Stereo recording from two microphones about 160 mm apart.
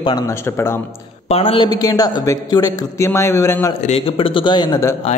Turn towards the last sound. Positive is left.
turn(degrees=25)  # may be behind; listen again after turning